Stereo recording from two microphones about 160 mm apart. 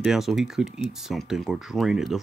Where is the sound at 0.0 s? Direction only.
Centre (ahead or behind).